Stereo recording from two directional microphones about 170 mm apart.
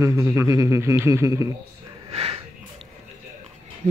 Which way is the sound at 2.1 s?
35° right (ahead or behind).